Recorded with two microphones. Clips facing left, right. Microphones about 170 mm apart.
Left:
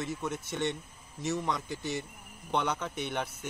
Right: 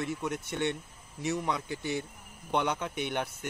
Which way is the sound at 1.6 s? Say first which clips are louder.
Right 2 dB; 60° right (ahead or behind).